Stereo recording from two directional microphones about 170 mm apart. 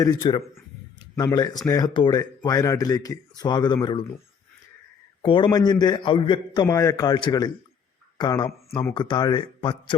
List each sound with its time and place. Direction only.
0.0 s speech: 25° left (ahead or behind)
5.2 s speech: 30° left (ahead or behind)